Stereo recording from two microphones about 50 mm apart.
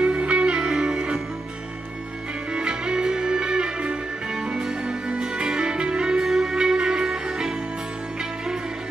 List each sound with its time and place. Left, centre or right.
0.0 s music: right
2.5 s music: centre